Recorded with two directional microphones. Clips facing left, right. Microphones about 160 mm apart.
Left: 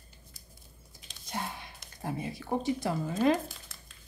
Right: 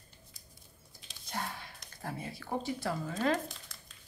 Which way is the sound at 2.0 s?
20° left (ahead or behind).